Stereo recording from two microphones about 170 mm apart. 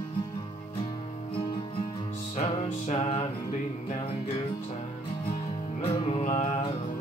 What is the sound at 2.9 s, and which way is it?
Music, 30° left (ahead or behind).